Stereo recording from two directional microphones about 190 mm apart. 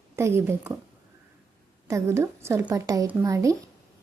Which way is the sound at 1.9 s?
15° right (ahead or behind).